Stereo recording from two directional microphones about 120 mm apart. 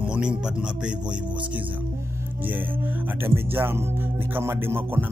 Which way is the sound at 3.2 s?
20° right (ahead or behind).